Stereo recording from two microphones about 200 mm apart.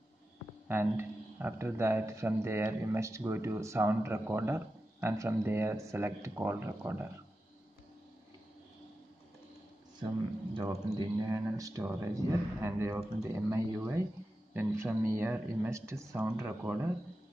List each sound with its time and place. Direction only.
0.7 s speech: 10° right (ahead or behind)
10.5 s speech: 20° right (ahead or behind)